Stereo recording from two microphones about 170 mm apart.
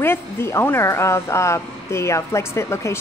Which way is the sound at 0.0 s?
15° left (ahead or behind).